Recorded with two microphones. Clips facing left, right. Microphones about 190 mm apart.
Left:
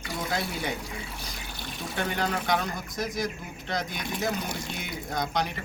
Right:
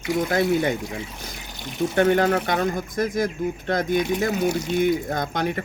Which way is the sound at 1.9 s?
60° right (ahead or behind).